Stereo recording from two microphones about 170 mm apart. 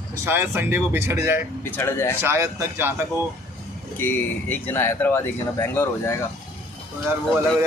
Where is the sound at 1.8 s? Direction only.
15° left (ahead or behind).